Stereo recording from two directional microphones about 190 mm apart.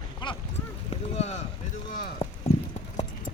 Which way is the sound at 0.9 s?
35° left (ahead or behind).